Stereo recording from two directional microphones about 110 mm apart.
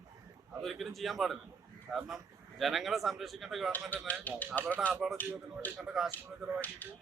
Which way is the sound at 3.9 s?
15° left (ahead or behind).